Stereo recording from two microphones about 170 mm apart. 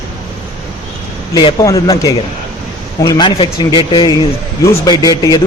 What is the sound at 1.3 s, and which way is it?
A man's voice, 25° left (ahead or behind).